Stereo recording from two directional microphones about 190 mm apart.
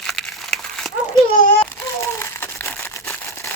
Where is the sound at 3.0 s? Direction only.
10° left (ahead or behind).